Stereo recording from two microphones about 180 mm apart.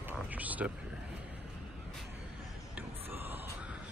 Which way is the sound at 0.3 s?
10° right (ahead or behind).